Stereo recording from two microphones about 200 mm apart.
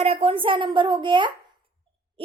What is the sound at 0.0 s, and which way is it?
A woman's voice, 30° right (ahead or behind).